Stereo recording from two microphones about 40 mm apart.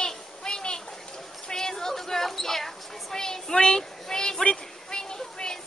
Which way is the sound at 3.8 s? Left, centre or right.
Centre.